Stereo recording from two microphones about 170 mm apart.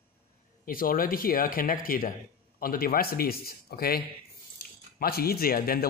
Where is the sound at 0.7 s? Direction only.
55° left (ahead or behind).